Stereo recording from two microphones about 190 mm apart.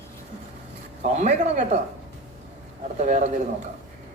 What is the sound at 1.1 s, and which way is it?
Female singing, 35° right (ahead or behind).